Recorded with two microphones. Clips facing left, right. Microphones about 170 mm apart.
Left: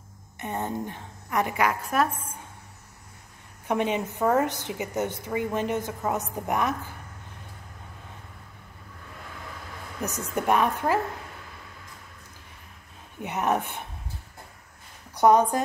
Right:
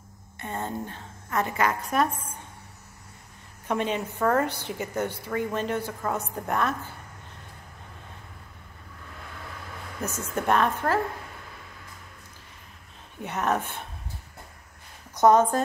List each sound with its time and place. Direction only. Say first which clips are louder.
0.4 s a woman's voice: left 2 dB; 15° left (ahead or behind)
3.6 s a woman's voice: left 2 dB; 15° left (ahead or behind)
10.0 s a woman's voice: left 1 dB; 15° left (ahead or behind)
13.2 s a woman's voice: left 1 dB; 15° left (ahead or behind)
15.1 s a woman's voice: even; 15° left (ahead or behind)